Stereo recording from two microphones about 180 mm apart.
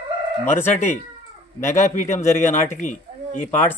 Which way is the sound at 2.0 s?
15° left (ahead or behind).